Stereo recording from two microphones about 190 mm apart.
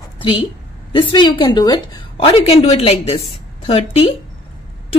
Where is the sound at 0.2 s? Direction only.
30° left (ahead or behind).